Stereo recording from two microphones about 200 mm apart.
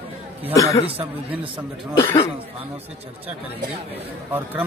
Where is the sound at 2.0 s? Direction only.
25° left (ahead or behind).